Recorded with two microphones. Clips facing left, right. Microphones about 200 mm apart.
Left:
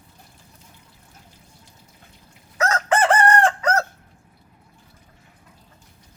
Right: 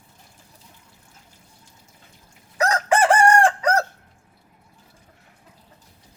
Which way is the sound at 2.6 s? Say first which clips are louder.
Right 1 dB; 15° right (ahead or behind).